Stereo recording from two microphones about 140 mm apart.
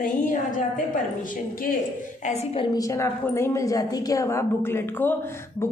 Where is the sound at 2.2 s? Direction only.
50° left (ahead or behind).